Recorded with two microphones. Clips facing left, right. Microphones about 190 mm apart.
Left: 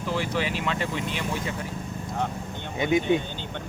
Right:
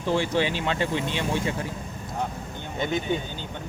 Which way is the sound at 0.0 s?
30° right (ahead or behind).